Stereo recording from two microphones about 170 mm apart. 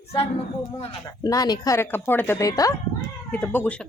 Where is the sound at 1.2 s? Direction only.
20° left (ahead or behind).